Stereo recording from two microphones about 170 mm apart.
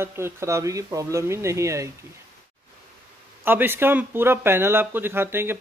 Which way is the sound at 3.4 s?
10° right (ahead or behind).